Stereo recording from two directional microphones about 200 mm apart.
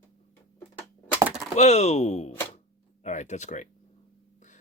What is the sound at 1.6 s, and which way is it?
Speech, 35° left (ahead or behind).